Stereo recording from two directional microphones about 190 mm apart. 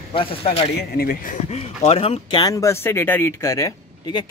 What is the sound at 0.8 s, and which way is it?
Speech, 50° left (ahead or behind).